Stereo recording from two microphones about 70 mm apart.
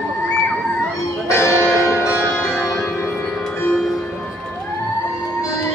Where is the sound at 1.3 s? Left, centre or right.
Left.